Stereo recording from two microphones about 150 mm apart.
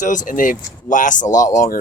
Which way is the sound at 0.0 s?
60° left (ahead or behind).